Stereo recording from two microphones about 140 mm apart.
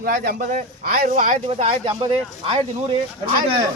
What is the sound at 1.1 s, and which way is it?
Speech, 70° right (ahead or behind).